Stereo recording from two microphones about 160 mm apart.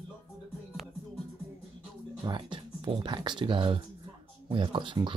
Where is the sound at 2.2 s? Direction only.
30° right (ahead or behind).